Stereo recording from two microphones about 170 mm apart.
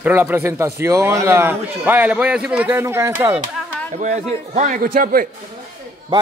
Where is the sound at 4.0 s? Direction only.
45° right (ahead or behind).